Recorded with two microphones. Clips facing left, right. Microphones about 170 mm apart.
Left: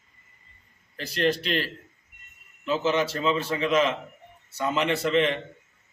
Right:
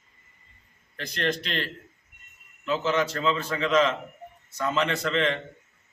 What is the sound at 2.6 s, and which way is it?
A man's voice, 15° left (ahead or behind).